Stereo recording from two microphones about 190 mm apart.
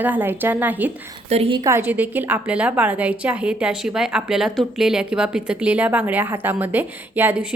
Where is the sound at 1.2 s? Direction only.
30° right (ahead or behind).